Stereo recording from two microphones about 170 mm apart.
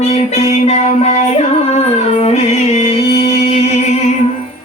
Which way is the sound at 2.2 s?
40° left (ahead or behind).